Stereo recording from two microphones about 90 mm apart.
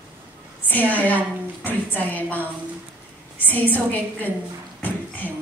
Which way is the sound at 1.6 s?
20° left (ahead or behind).